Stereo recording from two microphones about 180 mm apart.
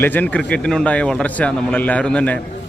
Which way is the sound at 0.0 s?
10° left (ahead or behind).